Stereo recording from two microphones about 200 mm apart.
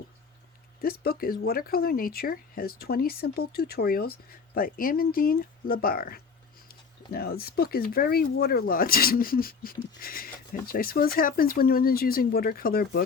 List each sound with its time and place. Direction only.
0.8 s speech: 50° left (ahead or behind)